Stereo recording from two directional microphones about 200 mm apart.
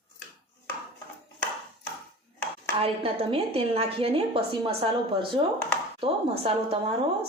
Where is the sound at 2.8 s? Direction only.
30° right (ahead or behind).